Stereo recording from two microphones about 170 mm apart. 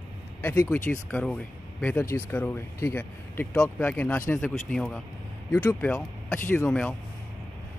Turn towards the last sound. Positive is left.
turn(degrees=5)  # may be behind; listen again after turning